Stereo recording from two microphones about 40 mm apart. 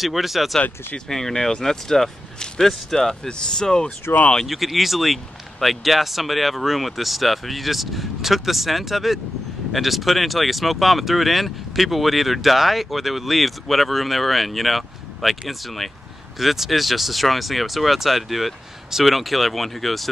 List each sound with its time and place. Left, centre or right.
0.0 s speech: centre
0.9 s speech: centre
3.3 s speech: centre
4.1 s speech: left
4.5 s speech: centre